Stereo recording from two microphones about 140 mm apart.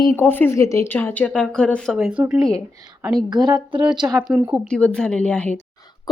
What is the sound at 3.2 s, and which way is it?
Speech, 30° right (ahead or behind).